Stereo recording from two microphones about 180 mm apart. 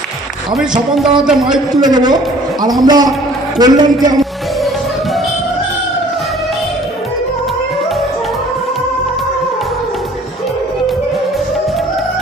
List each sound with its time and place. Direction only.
1.2 s a man's voice: 5° right (ahead or behind)
1.7 s a man's voice: 20° right (ahead or behind)